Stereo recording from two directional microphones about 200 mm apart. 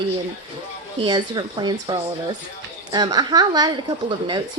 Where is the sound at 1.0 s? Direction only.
20° right (ahead or behind).